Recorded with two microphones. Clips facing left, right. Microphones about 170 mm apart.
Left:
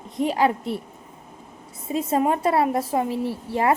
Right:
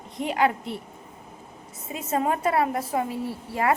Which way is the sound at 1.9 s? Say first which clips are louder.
Left 4 dB; 30° left (ahead or behind).